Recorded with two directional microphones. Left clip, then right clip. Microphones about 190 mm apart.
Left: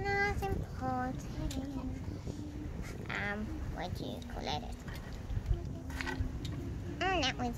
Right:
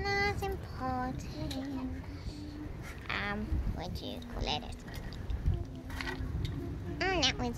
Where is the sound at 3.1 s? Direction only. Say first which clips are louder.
Right 2 dB; 5° right (ahead or behind).